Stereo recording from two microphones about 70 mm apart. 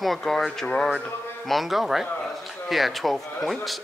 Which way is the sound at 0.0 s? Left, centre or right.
Centre.